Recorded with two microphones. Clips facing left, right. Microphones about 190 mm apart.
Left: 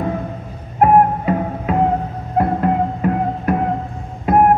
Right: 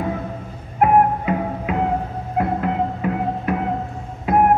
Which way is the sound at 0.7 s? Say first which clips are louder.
Left 3 dB; 40° left (ahead or behind).